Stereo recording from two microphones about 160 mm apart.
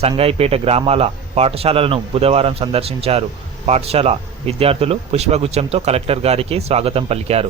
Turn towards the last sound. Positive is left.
turn(degrees=-40)  # may be behind; listen again after turning